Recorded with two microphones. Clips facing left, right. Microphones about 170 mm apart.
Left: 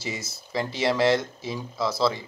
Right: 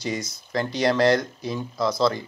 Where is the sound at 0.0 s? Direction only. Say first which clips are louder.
Right 5 dB; 5° left (ahead or behind).